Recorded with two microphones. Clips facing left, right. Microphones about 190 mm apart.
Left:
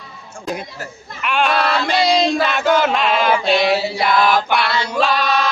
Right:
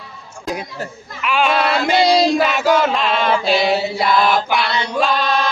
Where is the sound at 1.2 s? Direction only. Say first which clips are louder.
Right 1 dB; centre (ahead or behind).